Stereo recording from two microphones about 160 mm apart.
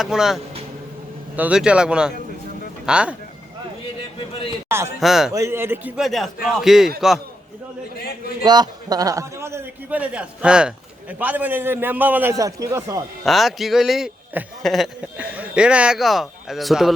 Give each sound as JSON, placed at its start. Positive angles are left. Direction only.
{"t": 0.0, "sound": "a man's voice", "side_deg": -5}
{"t": 1.4, "sound": "a man's voice", "side_deg": -5}
{"t": 4.7, "sound": "a man's voice", "side_deg": -15}
{"t": 4.9, "sound": "a man's voice", "side_deg": 0}
{"t": 5.3, "sound": "a man's voice", "side_deg": -20}
{"t": 6.0, "sound": "a man's voice", "side_deg": 0}
{"t": 8.4, "sound": "a man's voice", "side_deg": -25}
{"t": 13.2, "sound": "a man's voice", "side_deg": 0}